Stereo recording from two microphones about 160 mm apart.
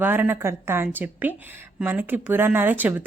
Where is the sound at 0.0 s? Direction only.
10° right (ahead or behind).